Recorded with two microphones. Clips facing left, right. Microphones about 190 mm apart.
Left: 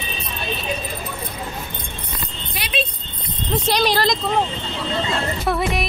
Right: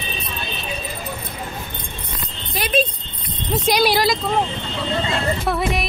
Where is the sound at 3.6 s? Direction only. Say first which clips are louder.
Right 2 dB; 10° right (ahead or behind).